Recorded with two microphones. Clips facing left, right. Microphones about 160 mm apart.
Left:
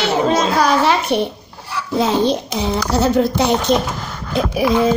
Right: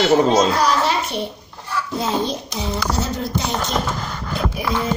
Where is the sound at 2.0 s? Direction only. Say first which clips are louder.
Left 8 dB; 80° left.